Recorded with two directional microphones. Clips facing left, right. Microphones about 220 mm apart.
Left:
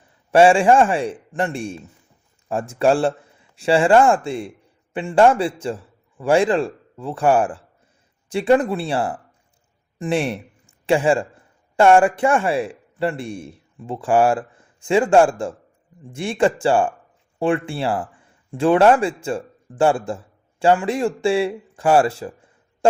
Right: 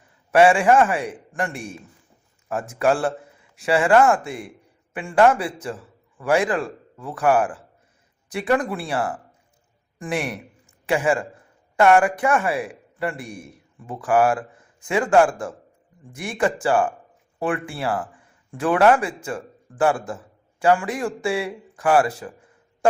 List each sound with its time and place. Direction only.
0.3 s a man's voice: 30° left (ahead or behind)